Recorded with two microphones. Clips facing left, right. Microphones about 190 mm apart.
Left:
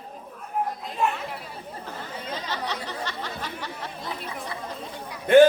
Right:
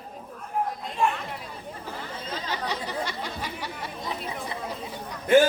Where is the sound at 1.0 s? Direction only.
Centre (ahead or behind).